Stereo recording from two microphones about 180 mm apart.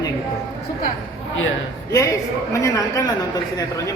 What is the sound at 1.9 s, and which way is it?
Speech, 20° left (ahead or behind).